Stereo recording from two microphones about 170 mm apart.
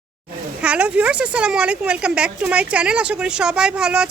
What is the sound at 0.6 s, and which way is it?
A woman's voice, 5° right (ahead or behind).